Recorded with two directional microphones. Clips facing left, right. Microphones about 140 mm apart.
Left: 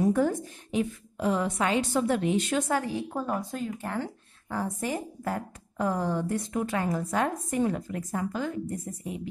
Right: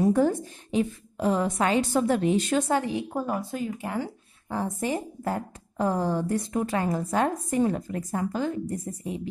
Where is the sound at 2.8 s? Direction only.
15° right (ahead or behind).